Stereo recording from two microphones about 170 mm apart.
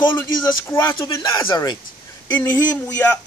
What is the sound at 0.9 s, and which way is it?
Speech, 30° left (ahead or behind).